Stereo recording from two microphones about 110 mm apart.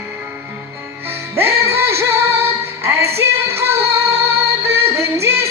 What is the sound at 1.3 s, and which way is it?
Music, 25° right (ahead or behind).